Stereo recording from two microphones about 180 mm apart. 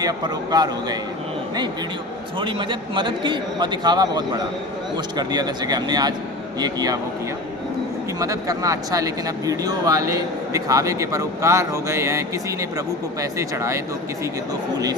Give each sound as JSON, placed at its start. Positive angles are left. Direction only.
{"t": 0.0, "sound": "speech", "side_deg": -20}
{"t": 2.4, "sound": "speech", "side_deg": -25}
{"t": 8.2, "sound": "speech", "side_deg": -20}
{"t": 13.6, "sound": "speech", "side_deg": -15}